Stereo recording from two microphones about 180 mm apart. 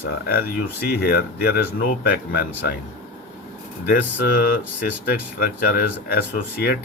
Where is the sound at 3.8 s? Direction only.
55° left (ahead or behind).